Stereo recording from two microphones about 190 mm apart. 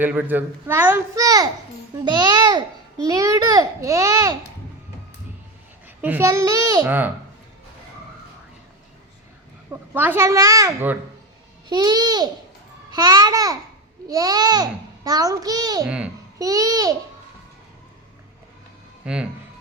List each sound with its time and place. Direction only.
0.0 s a child's voice: 10° right (ahead or behind)
2.0 s babbling: 20° right (ahead or behind)
6.0 s a child's voice: 10° right (ahead or behind)
9.9 s a child's voice: 10° right (ahead or behind)
19.0 s speech: 5° right (ahead or behind)